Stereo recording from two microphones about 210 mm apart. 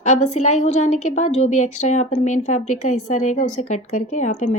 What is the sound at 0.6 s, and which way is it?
Speech, 30° left (ahead or behind).